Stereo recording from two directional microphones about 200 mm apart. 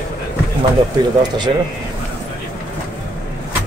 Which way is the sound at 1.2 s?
20° right (ahead or behind).